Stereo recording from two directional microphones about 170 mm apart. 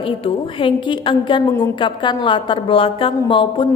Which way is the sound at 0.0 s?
30° left (ahead or behind).